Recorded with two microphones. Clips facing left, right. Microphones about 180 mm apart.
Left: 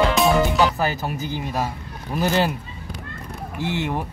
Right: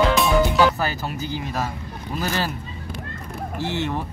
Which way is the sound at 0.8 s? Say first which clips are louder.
Left 2 dB; 15° left (ahead or behind).